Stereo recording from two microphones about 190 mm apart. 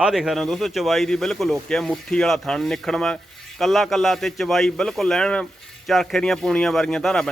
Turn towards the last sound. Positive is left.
turn(degrees=5)  # may be behind; listen again after turning